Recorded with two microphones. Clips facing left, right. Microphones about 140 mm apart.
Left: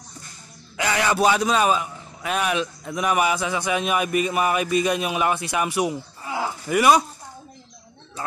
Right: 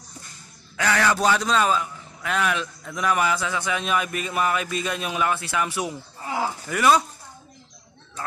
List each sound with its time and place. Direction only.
0.7 s a man's voice: 15° left (ahead or behind)